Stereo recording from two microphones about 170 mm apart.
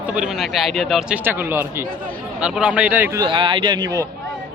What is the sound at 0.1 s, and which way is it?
Speech, 5° right (ahead or behind).